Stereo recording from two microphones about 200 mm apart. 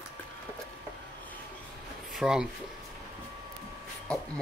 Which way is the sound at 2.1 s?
Centre (ahead or behind).